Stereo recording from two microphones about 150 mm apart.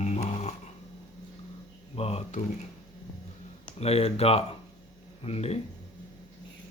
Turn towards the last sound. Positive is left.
turn(degrees=45)  # may be behind; listen again after turning